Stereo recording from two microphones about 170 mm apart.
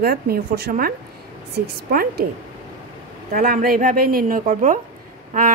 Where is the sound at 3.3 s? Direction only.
55° right (ahead or behind).